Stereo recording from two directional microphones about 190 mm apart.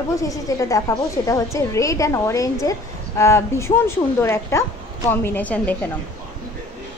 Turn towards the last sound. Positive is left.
turn(degrees=10)  # may be behind; listen again after turning